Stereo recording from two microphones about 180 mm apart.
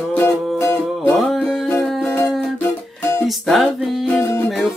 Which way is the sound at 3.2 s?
Centre (ahead or behind).